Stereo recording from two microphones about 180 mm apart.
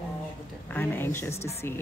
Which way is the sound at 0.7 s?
10° left (ahead or behind).